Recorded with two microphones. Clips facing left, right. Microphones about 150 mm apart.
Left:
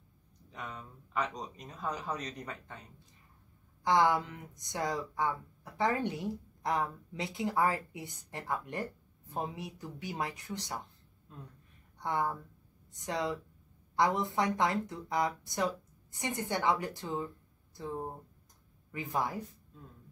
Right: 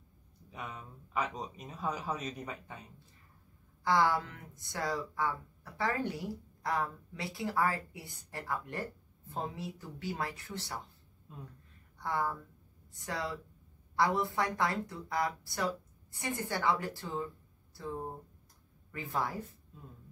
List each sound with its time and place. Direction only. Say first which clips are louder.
0.5 s a man's voice: even; 10° right (ahead or behind)
3.8 s a woman's voice: left 2 dB; 20° left (ahead or behind)
12.0 s a woman's voice: left 1 dB; 20° left (ahead or behind)